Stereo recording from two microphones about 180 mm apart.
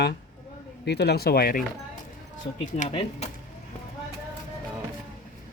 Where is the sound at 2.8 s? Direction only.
35° left (ahead or behind).